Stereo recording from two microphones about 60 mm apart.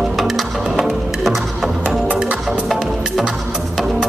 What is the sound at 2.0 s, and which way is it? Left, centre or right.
Music, centre.